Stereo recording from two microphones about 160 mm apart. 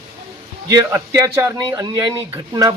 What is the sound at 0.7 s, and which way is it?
A man's voice, 20° right (ahead or behind).